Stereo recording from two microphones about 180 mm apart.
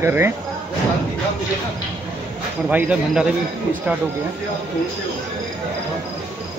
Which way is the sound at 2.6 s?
10° right (ahead or behind).